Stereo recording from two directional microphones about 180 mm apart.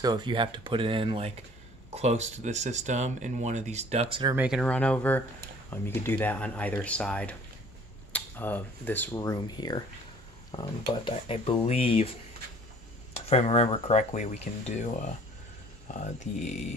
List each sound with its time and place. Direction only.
0.0 s speech: 25° right (ahead or behind)
4.4 s speech: 5° right (ahead or behind)
4.6 s speech: 5° left (ahead or behind); by 16.6 s 40° left (ahead or behind)